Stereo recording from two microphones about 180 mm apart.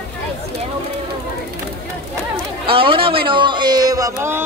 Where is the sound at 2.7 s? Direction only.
30° right (ahead or behind).